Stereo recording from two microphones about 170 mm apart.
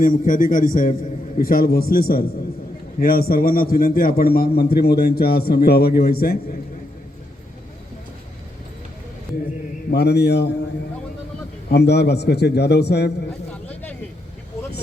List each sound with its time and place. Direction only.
0.0 s a man's voice: 50° left (ahead or behind)
9.9 s a man's voice: 75° left (ahead or behind)
11.7 s a man's voice: 75° left (ahead or behind)
13.5 s a sound: 10° left (ahead or behind)